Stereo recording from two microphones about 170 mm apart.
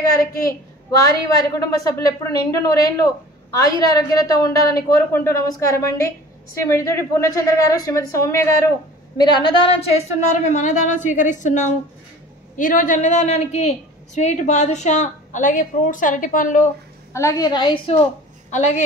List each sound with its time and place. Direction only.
0.4 s a woman's voice: 20° left (ahead or behind); by 16.6 s 50° left (ahead or behind)
17.1 s a woman's voice: 20° left (ahead or behind)
18.5 s a woman's voice: 45° left (ahead or behind)